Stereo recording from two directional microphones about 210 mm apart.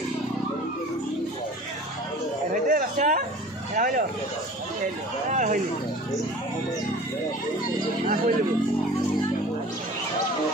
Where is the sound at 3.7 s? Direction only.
40° right (ahead or behind).